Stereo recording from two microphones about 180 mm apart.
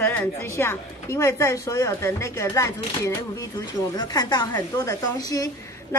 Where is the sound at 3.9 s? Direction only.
20° left (ahead or behind).